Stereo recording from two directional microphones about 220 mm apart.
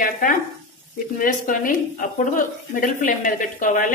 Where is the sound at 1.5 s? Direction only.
40° left (ahead or behind).